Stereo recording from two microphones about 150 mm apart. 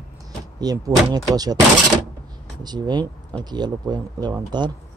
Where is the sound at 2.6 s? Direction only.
30° right (ahead or behind).